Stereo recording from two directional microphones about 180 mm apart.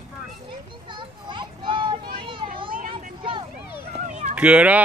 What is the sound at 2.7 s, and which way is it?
Vehicle, 50° right (ahead or behind).